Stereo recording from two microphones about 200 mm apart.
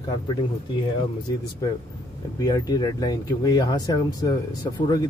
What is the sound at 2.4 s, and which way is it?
Speech, 20° left (ahead or behind).